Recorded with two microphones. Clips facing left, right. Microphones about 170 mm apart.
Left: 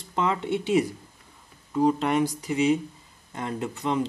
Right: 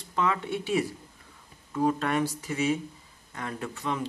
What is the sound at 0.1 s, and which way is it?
Speech, 25° left (ahead or behind).